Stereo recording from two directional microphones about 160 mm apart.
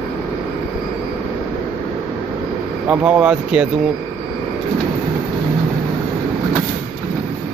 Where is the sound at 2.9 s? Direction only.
10° right (ahead or behind).